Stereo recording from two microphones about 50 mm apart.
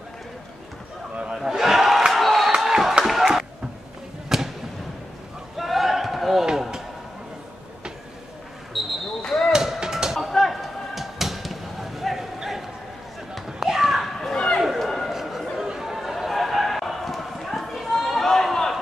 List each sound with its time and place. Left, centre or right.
1.3 s battle cry: centre
2.5 s crowd: centre
3.1 s a sound: centre
4.3 s basketball bounce: centre
5.6 s basketball bounce: centre
8.7 s basketball bounce: centre
9.2 s basketball bounce: centre
9.5 s chop: centre
10.1 s a sound: centre
13.5 s children playing: centre
14.3 s a sound: centre
14.6 s a sound: centre